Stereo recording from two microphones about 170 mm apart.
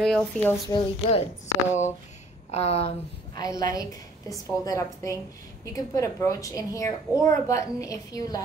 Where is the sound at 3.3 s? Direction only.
20° left (ahead or behind).